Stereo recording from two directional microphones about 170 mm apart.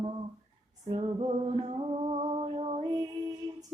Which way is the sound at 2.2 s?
35° right (ahead or behind).